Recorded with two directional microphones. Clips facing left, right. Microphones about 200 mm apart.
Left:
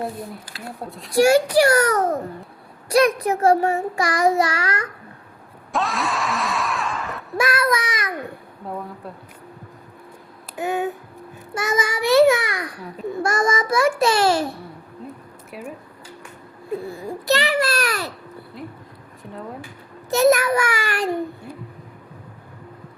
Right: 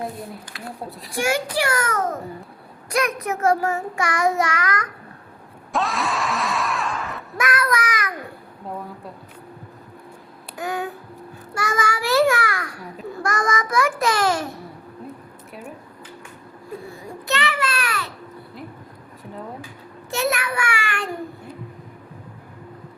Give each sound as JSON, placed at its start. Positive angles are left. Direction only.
{"t": 0.9, "sound": "a woman's voice", "side_deg": 0}
{"t": 1.1, "sound": "a child's voice", "side_deg": 35}
{"t": 5.7, "sound": "a sound", "side_deg": 0}
{"t": 7.3, "sound": "child singing", "side_deg": 30}
{"t": 10.6, "sound": "a sound", "side_deg": 20}
{"t": 11.5, "sound": "child singing", "side_deg": 20}
{"t": 13.1, "sound": "a child's voice", "side_deg": 25}
{"t": 17.2, "sound": "a sound", "side_deg": 35}
{"t": 20.1, "sound": "a child's voice", "side_deg": 40}